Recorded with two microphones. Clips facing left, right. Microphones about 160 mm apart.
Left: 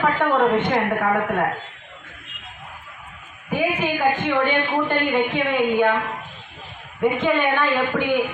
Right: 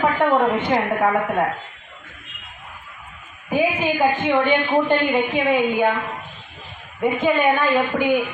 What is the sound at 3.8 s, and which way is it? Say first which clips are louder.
Speech: right 2 dB; 10° right (ahead or behind).